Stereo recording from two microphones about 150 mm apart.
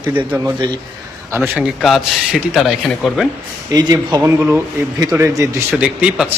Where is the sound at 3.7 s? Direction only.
25° right (ahead or behind).